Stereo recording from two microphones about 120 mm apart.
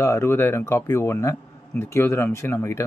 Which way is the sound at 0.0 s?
20° left (ahead or behind).